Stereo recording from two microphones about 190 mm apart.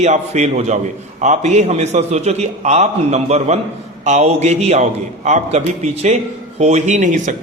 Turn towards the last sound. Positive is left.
turn(degrees=-40)  # may be behind; listen again after turning